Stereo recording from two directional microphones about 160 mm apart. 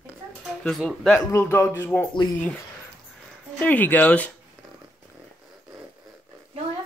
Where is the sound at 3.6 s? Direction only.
10° left (ahead or behind).